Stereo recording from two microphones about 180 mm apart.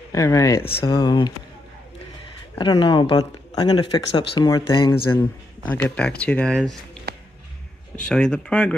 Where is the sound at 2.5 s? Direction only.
25° left (ahead or behind).